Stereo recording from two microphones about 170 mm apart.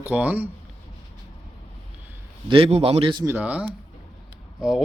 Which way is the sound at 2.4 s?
35° right (ahead or behind).